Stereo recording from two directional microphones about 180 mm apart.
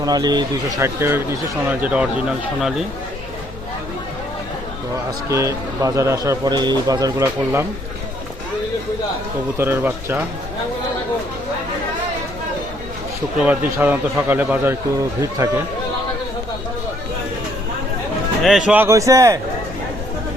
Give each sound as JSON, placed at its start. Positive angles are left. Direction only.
{"t": 0.0, "sound": "speech", "side_deg": -20}
{"t": 5.3, "sound": "speech", "side_deg": -15}
{"t": 9.6, "sound": "speech", "side_deg": -10}
{"t": 13.4, "sound": "speech", "side_deg": -10}
{"t": 18.4, "sound": "speech", "side_deg": 0}